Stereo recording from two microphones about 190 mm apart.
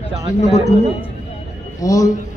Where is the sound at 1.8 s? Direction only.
20° left (ahead or behind).